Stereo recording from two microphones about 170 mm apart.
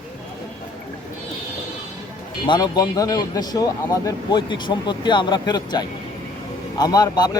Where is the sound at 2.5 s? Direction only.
25° left (ahead or behind).